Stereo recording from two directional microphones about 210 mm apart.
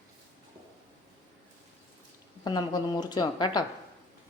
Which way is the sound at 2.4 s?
20° left (ahead or behind).